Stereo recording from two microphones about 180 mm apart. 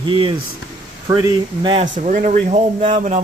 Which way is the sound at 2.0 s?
45° right (ahead or behind).